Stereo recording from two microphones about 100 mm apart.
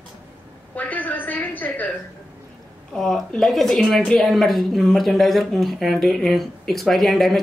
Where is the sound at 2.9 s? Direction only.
5° left (ahead or behind).